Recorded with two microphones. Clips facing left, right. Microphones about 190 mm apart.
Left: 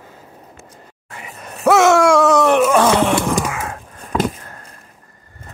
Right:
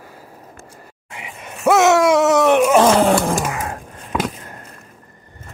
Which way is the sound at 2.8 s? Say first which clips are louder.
Right 1 dB; 35° right (ahead or behind).